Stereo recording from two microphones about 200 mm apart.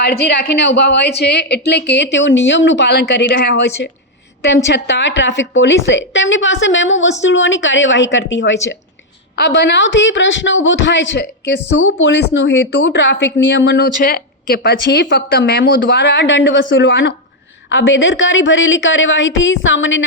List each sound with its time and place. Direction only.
0.0 s speech: 55° left (ahead or behind)
9.3 s speech: 55° left (ahead or behind)